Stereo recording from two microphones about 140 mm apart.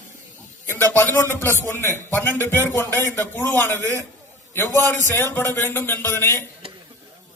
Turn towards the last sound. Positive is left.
turn(degrees=15)  # may be behind; listen again after turning